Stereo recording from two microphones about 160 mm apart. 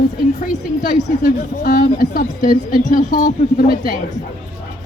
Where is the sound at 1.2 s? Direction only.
60° left (ahead or behind).